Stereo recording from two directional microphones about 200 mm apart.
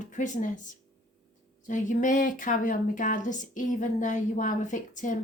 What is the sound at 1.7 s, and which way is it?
Speech, 40° left (ahead or behind).